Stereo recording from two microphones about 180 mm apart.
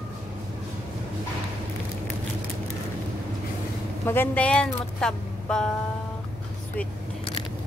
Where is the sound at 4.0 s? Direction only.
10° left (ahead or behind).